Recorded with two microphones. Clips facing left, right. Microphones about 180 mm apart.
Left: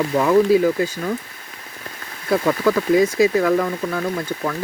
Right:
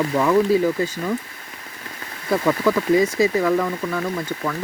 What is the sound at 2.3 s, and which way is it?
Speech, 5° left (ahead or behind).